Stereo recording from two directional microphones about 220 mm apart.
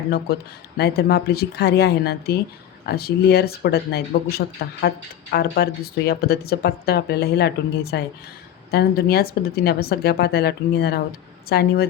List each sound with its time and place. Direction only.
0.8 s speech: 45° left (ahead or behind)